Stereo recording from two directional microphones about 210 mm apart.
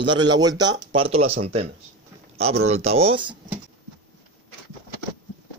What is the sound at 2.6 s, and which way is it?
Speech, 30° right (ahead or behind).